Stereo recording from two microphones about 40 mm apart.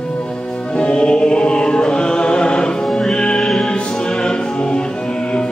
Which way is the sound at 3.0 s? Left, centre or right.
Centre.